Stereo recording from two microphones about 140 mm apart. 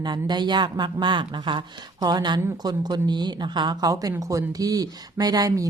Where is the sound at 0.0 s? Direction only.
30° right (ahead or behind).